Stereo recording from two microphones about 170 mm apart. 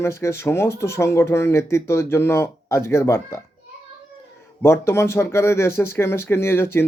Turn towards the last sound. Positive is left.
turn(degrees=15)  # may be behind; listen again after turning